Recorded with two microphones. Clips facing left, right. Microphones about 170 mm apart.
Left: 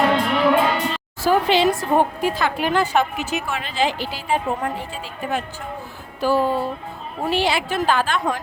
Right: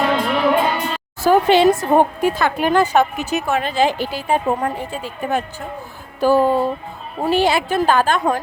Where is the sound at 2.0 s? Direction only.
50° right (ahead or behind).